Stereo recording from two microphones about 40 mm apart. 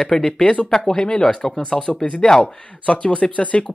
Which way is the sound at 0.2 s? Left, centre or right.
Left.